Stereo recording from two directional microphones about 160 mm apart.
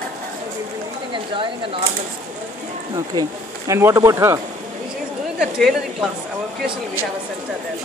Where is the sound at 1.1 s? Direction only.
30° right (ahead or behind).